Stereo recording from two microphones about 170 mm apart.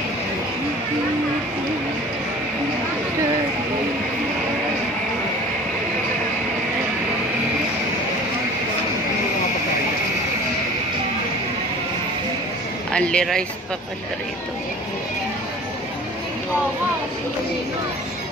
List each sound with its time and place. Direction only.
12.9 s speech: 5° left (ahead or behind)